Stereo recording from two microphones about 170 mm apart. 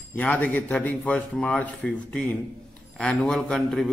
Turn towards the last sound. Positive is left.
turn(degrees=5)  # may be behind; listen again after turning